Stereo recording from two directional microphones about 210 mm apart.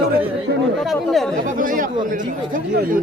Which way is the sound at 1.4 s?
40° right (ahead or behind).